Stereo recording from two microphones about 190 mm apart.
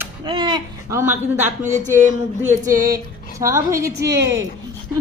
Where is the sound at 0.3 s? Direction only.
25° right (ahead or behind).